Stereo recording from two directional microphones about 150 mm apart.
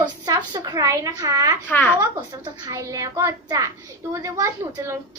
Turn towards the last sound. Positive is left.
turn(degrees=-20)  # may be behind; listen again after turning